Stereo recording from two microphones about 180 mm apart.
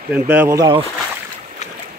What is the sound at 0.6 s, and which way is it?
Speech, 25° right (ahead or behind).